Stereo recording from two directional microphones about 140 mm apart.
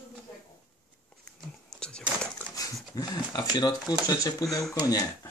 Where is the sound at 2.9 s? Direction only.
30° left (ahead or behind).